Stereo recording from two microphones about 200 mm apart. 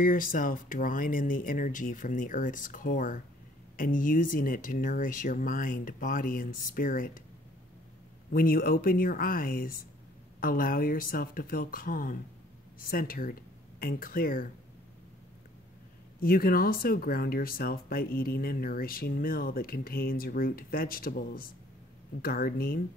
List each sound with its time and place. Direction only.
0.0 s speech: 45° left (ahead or behind)
8.3 s speech: 45° left (ahead or behind)
16.2 s speech: 45° left (ahead or behind)